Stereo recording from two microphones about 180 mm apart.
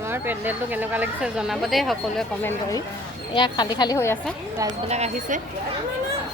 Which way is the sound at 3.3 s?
25° left (ahead or behind).